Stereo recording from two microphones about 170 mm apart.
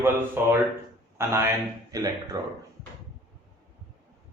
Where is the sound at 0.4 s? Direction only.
15° right (ahead or behind).